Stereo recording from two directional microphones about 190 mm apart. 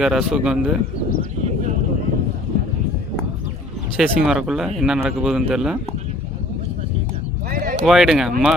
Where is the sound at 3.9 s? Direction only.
5° right (ahead or behind).